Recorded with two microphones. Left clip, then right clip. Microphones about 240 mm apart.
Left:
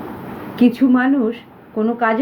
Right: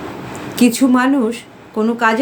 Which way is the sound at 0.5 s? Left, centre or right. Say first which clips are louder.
Right 2 dB; centre.